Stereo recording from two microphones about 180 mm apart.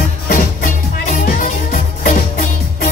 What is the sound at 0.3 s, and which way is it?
Music, 50° left (ahead or behind).